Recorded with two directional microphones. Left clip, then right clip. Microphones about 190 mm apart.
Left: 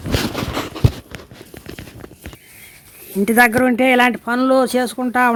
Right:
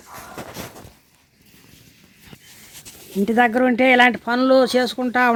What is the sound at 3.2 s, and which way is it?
Speech, 5° left (ahead or behind).